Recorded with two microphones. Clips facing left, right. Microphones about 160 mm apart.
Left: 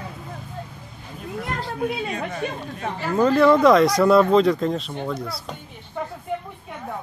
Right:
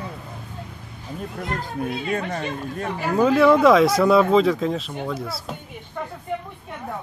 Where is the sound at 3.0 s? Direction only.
5° right (ahead or behind).